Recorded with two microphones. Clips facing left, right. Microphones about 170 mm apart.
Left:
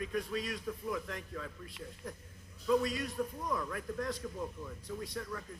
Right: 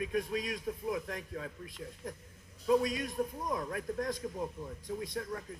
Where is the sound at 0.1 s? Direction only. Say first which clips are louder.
Right 2 dB; 45° right (ahead or behind).